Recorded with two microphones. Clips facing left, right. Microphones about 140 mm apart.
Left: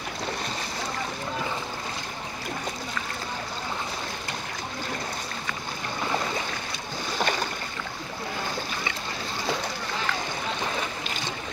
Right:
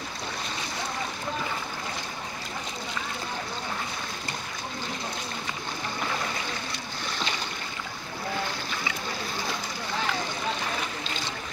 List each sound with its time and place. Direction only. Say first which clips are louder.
7.2 s boat: left 7 dB; 50° left (ahead or behind)